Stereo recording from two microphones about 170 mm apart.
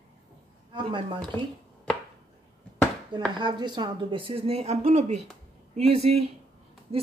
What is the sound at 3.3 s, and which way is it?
Speech, 25° right (ahead or behind).